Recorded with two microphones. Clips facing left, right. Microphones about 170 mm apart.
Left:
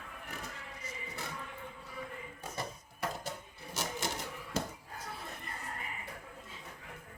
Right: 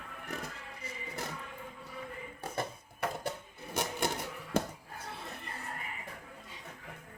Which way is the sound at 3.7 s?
55° right (ahead or behind).